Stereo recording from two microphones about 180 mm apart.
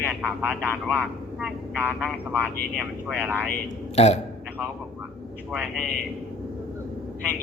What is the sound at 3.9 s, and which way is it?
Speech, 35° left (ahead or behind).